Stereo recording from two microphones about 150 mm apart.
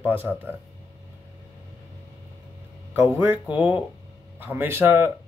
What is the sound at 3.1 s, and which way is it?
A man's voice, 10° right (ahead or behind).